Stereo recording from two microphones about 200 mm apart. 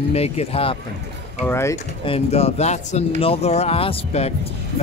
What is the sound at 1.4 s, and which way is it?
Speech, 10° left (ahead or behind).